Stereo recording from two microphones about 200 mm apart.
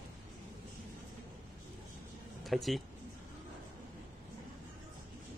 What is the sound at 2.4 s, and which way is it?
Speech, centre (ahead or behind).